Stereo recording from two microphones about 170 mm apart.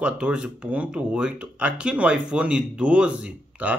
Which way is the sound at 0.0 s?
5° right (ahead or behind).